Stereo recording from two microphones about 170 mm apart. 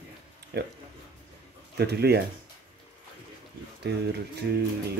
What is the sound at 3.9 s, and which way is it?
Speech, 75° right (ahead or behind).